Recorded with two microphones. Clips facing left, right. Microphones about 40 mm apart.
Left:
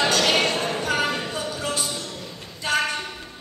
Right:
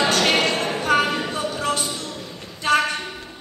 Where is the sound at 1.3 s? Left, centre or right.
Right.